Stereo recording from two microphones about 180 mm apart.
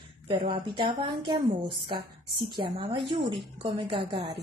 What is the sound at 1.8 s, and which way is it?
A woman's voice, 30° right (ahead or behind).